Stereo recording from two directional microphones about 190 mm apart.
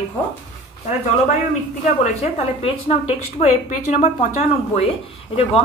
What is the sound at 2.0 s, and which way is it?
A woman's voice, 35° left (ahead or behind).